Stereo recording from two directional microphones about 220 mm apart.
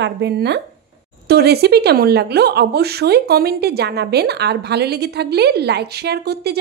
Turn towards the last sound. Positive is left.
turn(degrees=-45)  # may be behind; listen again after turning